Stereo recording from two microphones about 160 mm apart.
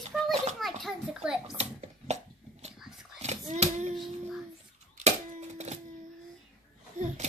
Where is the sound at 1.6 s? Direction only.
45° right (ahead or behind).